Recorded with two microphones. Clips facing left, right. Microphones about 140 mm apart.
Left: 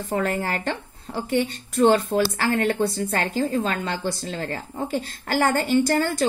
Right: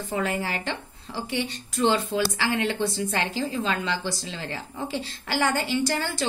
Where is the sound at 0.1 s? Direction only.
50° left (ahead or behind).